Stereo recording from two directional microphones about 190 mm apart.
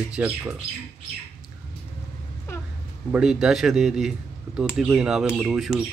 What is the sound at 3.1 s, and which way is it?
Speech, 5° right (ahead or behind).